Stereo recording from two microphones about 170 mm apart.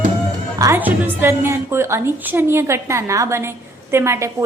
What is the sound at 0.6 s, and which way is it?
A woman's voice, 10° right (ahead or behind).